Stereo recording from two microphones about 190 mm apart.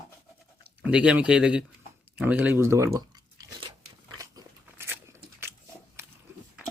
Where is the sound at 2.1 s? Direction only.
10° right (ahead or behind).